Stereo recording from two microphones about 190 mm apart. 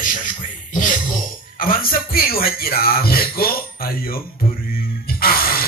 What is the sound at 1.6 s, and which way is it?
Speech, 50° left (ahead or behind).